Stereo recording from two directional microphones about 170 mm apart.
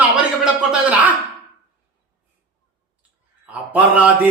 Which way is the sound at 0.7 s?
10° right (ahead or behind).